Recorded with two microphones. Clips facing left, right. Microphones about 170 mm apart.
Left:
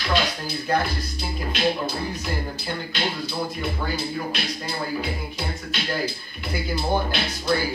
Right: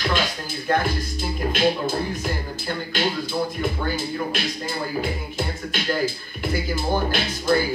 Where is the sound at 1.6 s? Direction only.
50° right (ahead or behind).